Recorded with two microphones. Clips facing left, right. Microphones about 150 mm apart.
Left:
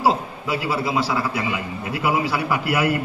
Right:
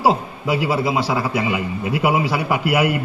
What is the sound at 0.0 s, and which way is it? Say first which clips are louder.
A man's voice: right 2 dB; 15° right (ahead or behind).